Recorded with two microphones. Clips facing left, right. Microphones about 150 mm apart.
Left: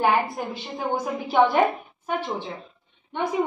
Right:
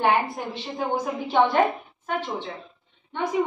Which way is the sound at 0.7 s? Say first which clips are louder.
Even; 5° left (ahead or behind).